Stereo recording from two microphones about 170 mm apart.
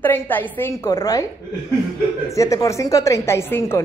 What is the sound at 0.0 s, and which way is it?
A woman's voice, 10° left (ahead or behind).